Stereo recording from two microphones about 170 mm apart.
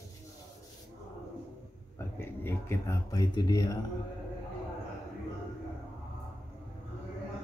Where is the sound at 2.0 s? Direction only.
15° left (ahead or behind).